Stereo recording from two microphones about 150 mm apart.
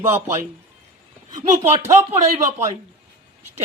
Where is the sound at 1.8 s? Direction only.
15° right (ahead or behind).